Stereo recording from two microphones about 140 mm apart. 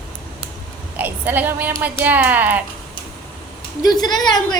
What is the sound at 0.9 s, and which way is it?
A woman's voice, 10° right (ahead or behind).